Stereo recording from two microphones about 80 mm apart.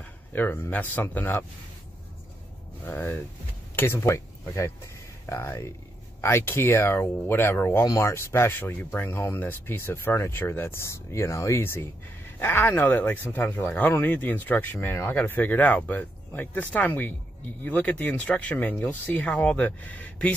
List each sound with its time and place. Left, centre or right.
0.3 s speech: left
2.8 s speech: left
7.8 s speech: left; by 20.3 s centre